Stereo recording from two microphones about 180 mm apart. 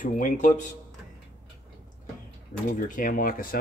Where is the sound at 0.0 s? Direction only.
45° left (ahead or behind).